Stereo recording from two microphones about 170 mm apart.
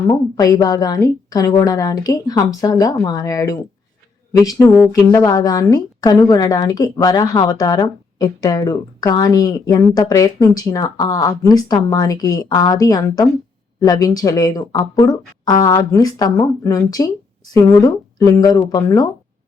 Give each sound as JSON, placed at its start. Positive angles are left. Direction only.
{"t": 0.1, "sound": "a woman's voice", "side_deg": 20}